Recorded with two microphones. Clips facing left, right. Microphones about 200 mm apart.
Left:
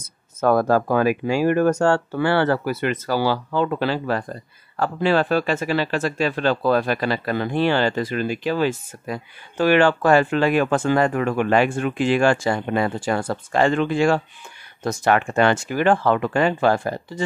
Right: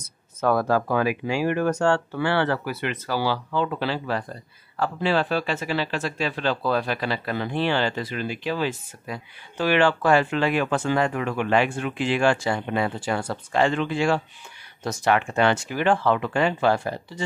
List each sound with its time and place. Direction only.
0.4 s speech: 45° left (ahead or behind)